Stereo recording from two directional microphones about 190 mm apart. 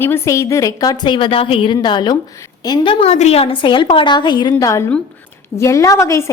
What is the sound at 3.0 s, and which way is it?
A woman's voice, 35° left (ahead or behind).